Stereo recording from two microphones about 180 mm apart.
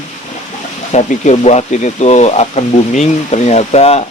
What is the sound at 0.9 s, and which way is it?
Speech, 40° left (ahead or behind).